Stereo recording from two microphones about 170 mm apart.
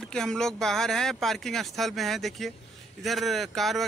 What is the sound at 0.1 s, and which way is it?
Speech, 5° left (ahead or behind).